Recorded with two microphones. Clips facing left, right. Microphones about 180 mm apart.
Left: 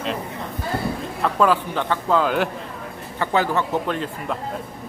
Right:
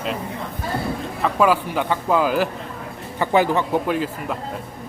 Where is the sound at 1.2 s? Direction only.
10° right (ahead or behind).